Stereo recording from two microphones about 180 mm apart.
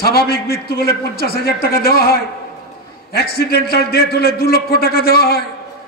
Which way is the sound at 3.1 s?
60° left (ahead or behind).